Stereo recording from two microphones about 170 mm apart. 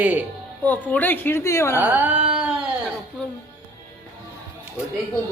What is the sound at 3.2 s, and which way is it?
Music, 5° left (ahead or behind).